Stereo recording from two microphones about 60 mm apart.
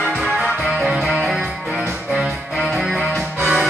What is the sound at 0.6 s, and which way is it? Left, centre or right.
Music, centre.